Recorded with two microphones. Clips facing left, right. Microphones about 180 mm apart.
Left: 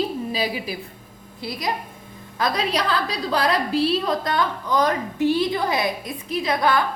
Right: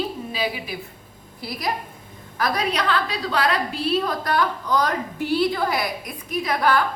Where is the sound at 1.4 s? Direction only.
20° left (ahead or behind).